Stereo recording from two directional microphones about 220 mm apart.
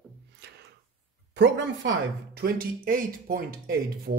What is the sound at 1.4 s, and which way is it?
Speech, 50° right (ahead or behind).